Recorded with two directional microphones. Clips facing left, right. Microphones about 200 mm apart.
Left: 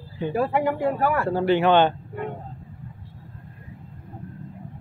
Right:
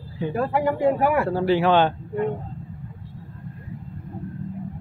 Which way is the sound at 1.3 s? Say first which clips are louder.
Even; centre (ahead or behind).